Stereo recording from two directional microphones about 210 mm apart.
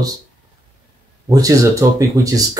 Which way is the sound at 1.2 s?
15° right (ahead or behind).